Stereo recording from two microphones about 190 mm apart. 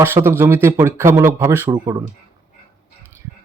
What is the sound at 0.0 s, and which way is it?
Speech, 10° right (ahead or behind).